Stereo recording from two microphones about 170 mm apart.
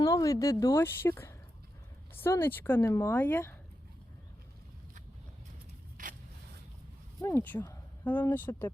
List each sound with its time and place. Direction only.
0.0 s a woman's voice: 20° left (ahead or behind)
6.0 s a sound: 50° right (ahead or behind)
7.2 s speech: 15° left (ahead or behind)